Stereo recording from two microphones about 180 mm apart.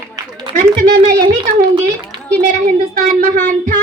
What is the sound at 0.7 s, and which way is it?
Speech, 60° right (ahead or behind).